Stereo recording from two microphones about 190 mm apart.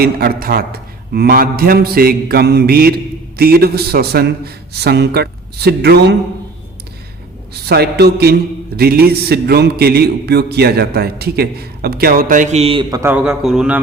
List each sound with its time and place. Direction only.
0.0 s a man's voice: 55° right (ahead or behind)
7.6 s a man's voice: 55° right (ahead or behind); by 12.8 s 30° right (ahead or behind)
12.9 s a man's voice: 10° right (ahead or behind)